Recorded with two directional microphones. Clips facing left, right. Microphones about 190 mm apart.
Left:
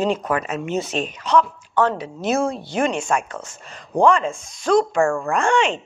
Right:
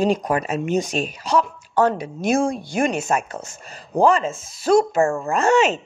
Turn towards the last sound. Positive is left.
turn(degrees=-5)  # may be behind; listen again after turning